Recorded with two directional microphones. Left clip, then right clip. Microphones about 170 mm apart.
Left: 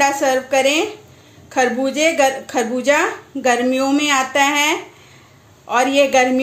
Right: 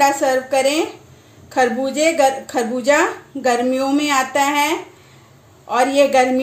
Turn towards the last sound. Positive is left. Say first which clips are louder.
# even
turn(degrees=5)  # may be behind; listen again after turning